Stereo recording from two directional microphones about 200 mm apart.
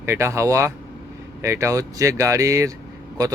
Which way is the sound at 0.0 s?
15° right (ahead or behind).